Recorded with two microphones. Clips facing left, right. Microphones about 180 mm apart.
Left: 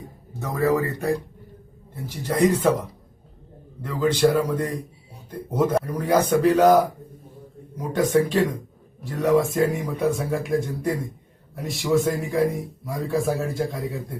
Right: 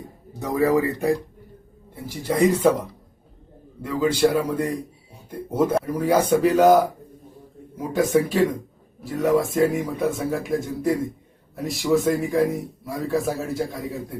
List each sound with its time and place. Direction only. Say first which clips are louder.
0.3 s speech: right 2 dB; 15° right (ahead or behind)
4.0 s speech: even; 10° right (ahead or behind)
7.8 s speech: even; 5° right (ahead or behind)